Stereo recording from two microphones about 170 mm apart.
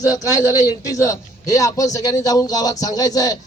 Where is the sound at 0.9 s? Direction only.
20° left (ahead or behind).